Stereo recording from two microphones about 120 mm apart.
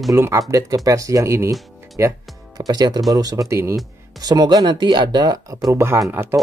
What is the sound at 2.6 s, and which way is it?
Speech, 35° right (ahead or behind).